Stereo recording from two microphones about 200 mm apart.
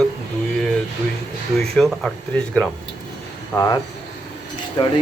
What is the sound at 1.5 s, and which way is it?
Speech, centre (ahead or behind).